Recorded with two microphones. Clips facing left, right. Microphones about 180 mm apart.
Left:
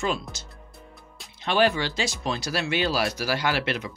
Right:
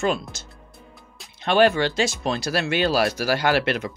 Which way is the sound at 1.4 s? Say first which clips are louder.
Right 5 dB; 55° right (ahead or behind).